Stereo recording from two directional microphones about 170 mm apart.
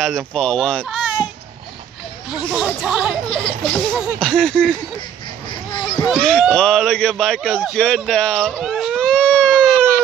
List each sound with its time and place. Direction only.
0.0 s a man's voice: 5° left (ahead or behind)
2.3 s a man's voice: 5° right (ahead or behind)
3.4 s a man's voice: 10° left (ahead or behind)
5.7 s a sound: 25° left (ahead or behind)
6.0 s a man's voice: 5° left (ahead or behind)
8.5 s baby cry: centre (ahead or behind)